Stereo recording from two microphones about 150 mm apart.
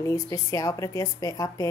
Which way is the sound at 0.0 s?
20° left (ahead or behind).